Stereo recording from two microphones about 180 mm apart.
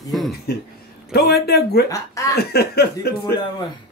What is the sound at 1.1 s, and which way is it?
Speech, 60° left (ahead or behind).